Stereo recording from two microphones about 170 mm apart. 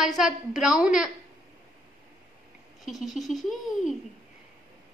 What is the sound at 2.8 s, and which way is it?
Speech, centre (ahead or behind).